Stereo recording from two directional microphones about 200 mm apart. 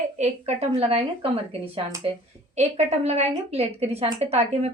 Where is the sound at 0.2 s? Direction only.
30° right (ahead or behind).